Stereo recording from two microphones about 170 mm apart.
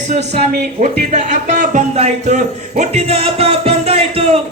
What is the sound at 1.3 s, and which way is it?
Music, 50° right (ahead or behind).